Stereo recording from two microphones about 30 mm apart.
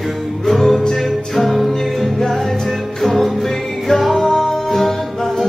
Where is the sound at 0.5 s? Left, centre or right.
Centre.